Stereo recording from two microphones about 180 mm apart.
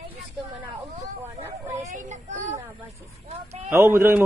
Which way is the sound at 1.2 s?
15° right (ahead or behind).